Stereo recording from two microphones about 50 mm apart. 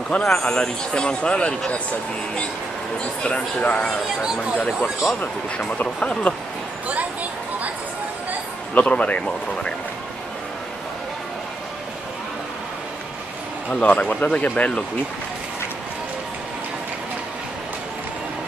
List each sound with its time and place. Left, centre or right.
0.2 s a man's voice: centre
3.2 s speech: left
4.6 s speech: centre
5.8 s speech: left
8.7 s speech: left
13.7 s speech: left